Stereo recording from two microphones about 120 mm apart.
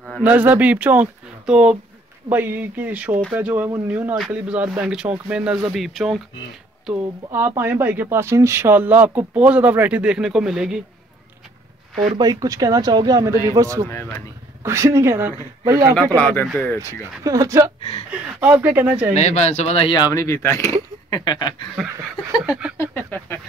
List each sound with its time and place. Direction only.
0.2 s speech: 15° right (ahead or behind)
7.2 s speech: 20° right (ahead or behind); by 10.8 s 5° right (ahead or behind)
11.9 s speech: centre (ahead or behind)
12.2 s speech: 30° right (ahead or behind)
16.2 s speech: 15° left (ahead or behind)
17.2 s speech: 30° right (ahead or behind)
18.1 s speech: 15° right (ahead or behind)
19.1 s speech: 65° left (ahead or behind)
20.0 s speech: 25° left (ahead or behind)
22.8 s a sound: 15° left (ahead or behind)